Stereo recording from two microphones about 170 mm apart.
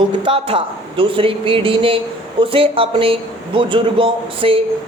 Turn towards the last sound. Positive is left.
turn(degrees=-30)  # may be behind; listen again after turning